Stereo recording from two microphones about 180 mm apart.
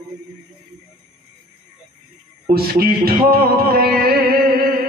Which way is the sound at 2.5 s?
55° right (ahead or behind).